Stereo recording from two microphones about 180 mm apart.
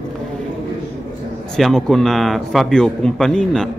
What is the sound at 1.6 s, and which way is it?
A man's voice, centre (ahead or behind).